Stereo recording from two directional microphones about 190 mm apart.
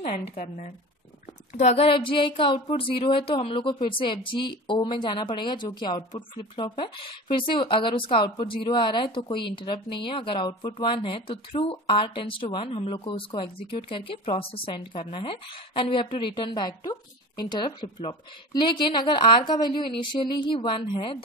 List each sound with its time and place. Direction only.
1.6 s speech: 35° left (ahead or behind)